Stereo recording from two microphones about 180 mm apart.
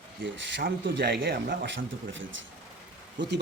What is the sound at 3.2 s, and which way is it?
Speech, 80° right.